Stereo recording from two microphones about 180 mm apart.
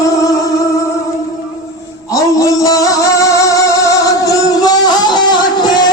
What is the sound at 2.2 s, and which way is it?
Music, 20° left (ahead or behind).